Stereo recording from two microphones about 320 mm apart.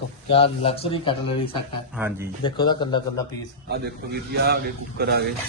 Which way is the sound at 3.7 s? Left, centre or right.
Right.